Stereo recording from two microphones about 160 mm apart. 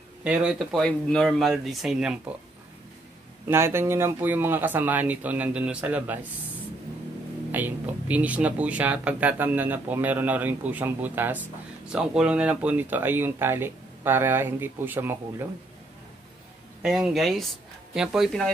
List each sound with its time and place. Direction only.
0.2 s speech: 5° right (ahead or behind)
3.4 s speech: 15° right (ahead or behind)
7.5 s speech: 10° right (ahead or behind)
16.8 s speech: 5° right (ahead or behind)